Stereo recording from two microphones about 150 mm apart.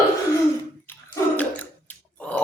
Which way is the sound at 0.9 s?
10° left (ahead or behind).